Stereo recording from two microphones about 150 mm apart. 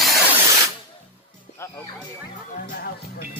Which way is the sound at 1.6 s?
20° left (ahead or behind).